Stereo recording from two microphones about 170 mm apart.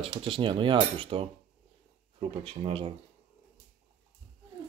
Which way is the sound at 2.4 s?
35° right (ahead or behind).